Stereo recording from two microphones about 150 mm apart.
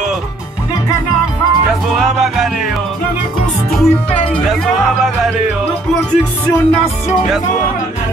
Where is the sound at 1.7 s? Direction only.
Centre (ahead or behind).